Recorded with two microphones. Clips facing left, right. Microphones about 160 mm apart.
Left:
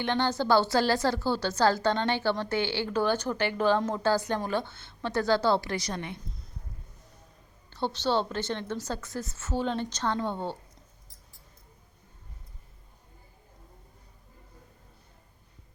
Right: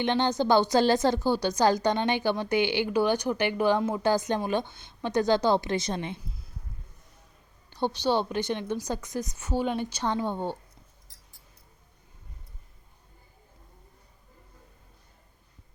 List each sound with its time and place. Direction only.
0.0 s a woman's voice: 20° right (ahead or behind)
6.1 s a sound: 5° right (ahead or behind)
7.7 s a woman's voice: 15° right (ahead or behind)